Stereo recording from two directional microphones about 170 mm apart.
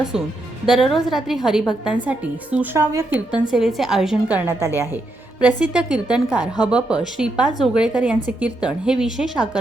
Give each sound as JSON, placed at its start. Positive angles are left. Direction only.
{"t": 0.6, "sound": "a woman's voice", "side_deg": -5}
{"t": 3.5, "sound": "a woman's voice", "side_deg": 0}